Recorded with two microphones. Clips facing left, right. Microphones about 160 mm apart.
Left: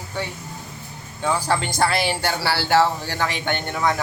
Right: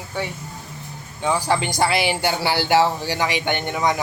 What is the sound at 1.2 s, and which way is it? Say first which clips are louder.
Speech: right 1 dB; 15° right (ahead or behind).